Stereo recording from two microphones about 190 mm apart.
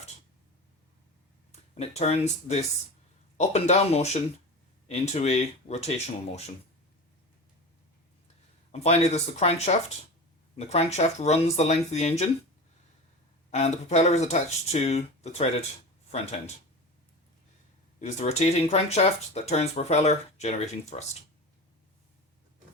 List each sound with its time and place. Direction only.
1.7 s speech: 35° left (ahead or behind)
8.7 s speech: 35° left (ahead or behind)
13.5 s speech: 35° left (ahead or behind)
18.0 s speech: 35° left (ahead or behind)